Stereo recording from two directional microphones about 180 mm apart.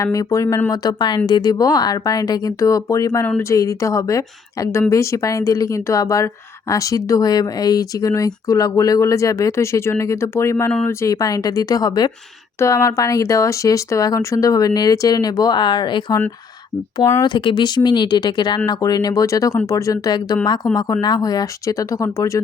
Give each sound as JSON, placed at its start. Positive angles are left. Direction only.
{"t": 0.0, "sound": "speech", "side_deg": 20}